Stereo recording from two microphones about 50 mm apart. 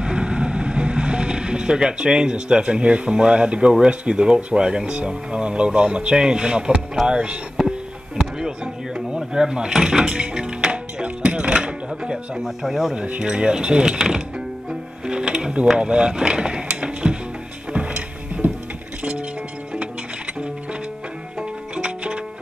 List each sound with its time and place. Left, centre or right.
0.0 s boat: centre
3.8 s speech: centre
8.4 s a sound: centre
12.4 s speech: centre
12.9 s speech: right
13.9 s speech: centre
14.7 s music: centre
15.8 s speech: centre
16.8 s music: centre
21.4 s music: right